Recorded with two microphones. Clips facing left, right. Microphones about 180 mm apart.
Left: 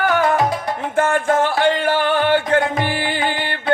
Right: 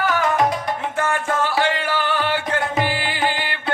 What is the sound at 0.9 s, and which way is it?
Music, 50° left (ahead or behind).